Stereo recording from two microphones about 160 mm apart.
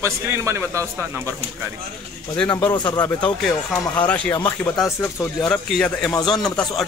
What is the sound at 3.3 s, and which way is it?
Speech, 5° left (ahead or behind).